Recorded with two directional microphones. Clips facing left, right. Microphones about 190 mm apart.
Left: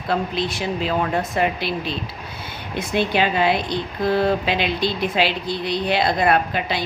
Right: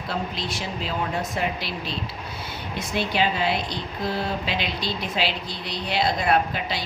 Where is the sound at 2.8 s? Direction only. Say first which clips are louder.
Left 5 dB; 55° left (ahead or behind).